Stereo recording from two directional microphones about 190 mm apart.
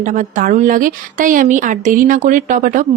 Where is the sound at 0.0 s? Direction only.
40° right (ahead or behind).